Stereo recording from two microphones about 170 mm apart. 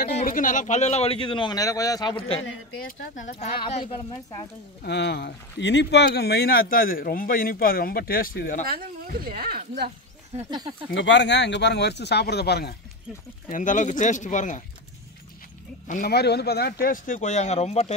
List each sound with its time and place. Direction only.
0.1 s a man's voice: 55° left (ahead or behind)
3.9 s speech: 25° left (ahead or behind)
4.8 s speech: 90° left; by 8.6 s 55° left (ahead or behind)
8.6 s speech: 60° right (ahead or behind)
10.5 s speech: 25° right (ahead or behind)
10.9 s speech: 90° left; by 12.7 s 75° left (ahead or behind)
13.5 s speech: 50° left (ahead or behind)
15.9 s speech: 60° left (ahead or behind); by 17.9 s 40° left (ahead or behind)